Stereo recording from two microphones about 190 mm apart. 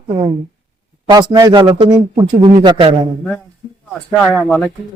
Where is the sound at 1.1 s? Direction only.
20° right (ahead or behind).